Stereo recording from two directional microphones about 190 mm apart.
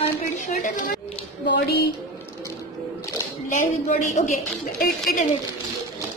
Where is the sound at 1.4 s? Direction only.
60° left (ahead or behind).